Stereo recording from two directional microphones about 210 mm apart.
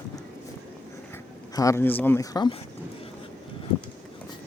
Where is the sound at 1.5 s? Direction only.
15° left (ahead or behind).